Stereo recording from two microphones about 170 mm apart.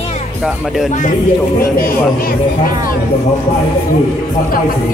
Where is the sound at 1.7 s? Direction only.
60° left (ahead or behind).